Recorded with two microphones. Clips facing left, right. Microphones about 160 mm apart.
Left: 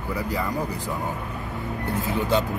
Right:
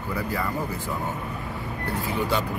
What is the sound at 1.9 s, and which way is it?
Speech, 20° left (ahead or behind).